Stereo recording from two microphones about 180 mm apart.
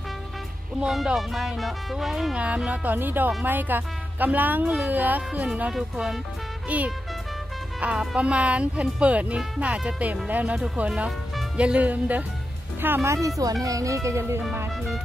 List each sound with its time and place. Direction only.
0.7 s speech: 5° right (ahead or behind)